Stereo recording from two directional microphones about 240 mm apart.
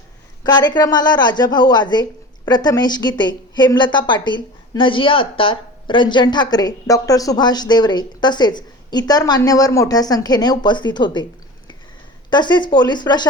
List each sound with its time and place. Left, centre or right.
0.4 s a woman's voice: centre
12.3 s speech: centre